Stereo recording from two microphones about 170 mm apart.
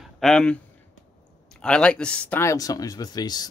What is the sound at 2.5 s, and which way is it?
Speech, 20° left (ahead or behind).